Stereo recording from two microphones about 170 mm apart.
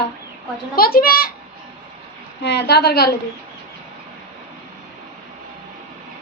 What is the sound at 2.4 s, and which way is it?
Speech, 75° left (ahead or behind).